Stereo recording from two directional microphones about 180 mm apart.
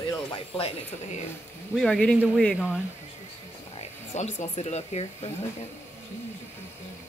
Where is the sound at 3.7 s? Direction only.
40° left (ahead or behind).